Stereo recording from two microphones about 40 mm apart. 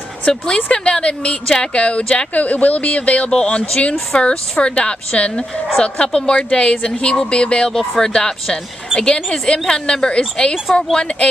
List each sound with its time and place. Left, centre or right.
0.3 s speech: centre
0.7 s a woman's voice: left
2.4 s speech: left
3.3 s a woman's voice: left
10.5 s speech: centre